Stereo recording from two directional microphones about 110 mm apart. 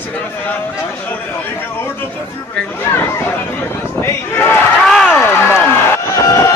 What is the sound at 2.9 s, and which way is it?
Chatter, 20° left (ahead or behind).